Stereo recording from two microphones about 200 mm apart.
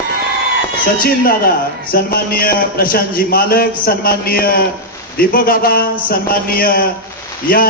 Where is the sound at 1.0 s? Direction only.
50° left (ahead or behind).